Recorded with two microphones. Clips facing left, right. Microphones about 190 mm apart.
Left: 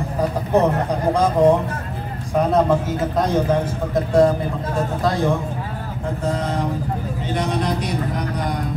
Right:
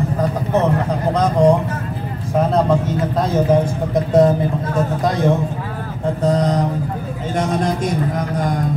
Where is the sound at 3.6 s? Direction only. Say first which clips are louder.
Right 2 dB; 20° right (ahead or behind).